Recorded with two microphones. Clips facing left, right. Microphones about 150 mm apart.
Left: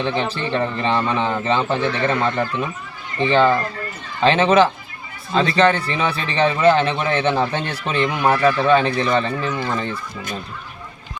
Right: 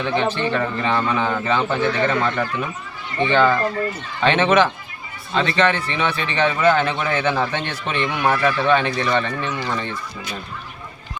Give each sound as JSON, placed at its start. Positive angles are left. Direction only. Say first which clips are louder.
{"t": 0.5, "sound": "a man's voice", "louder": "left 1 dB", "side_deg": 30}